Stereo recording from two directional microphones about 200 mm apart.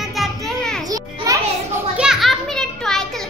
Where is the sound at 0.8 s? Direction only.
15° right (ahead or behind).